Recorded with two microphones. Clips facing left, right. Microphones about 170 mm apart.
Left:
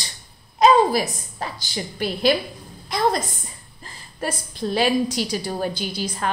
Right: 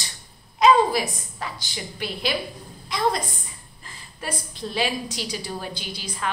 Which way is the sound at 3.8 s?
35° left (ahead or behind).